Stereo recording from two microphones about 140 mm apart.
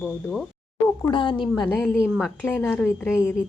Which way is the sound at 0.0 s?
Centre (ahead or behind).